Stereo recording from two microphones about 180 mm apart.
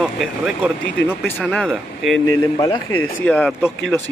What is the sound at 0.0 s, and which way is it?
Speech, centre (ahead or behind).